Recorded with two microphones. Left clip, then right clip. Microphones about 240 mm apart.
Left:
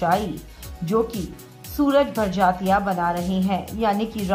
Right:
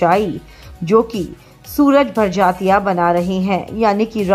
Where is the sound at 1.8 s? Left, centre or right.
Right.